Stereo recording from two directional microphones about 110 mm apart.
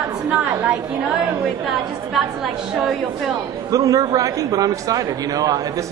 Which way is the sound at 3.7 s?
30° right (ahead or behind).